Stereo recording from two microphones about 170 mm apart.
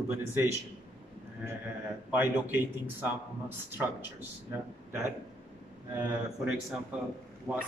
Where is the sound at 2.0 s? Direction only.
10° right (ahead or behind).